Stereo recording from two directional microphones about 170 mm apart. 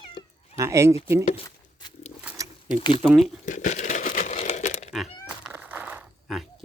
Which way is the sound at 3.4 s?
45° left (ahead or behind).